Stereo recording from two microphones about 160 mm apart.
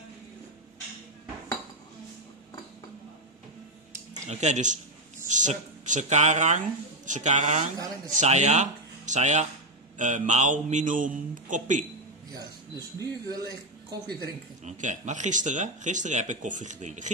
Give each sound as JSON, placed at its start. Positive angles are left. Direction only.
{"t": 4.3, "sound": "speech", "side_deg": -45}
{"t": 12.3, "sound": "speech", "side_deg": -25}
{"t": 14.6, "sound": "speech", "side_deg": -50}